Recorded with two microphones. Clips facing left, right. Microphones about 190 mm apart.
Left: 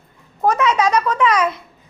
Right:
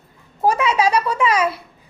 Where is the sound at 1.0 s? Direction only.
10° right (ahead or behind).